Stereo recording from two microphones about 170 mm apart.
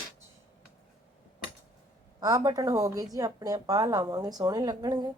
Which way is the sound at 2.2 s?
20° right (ahead or behind).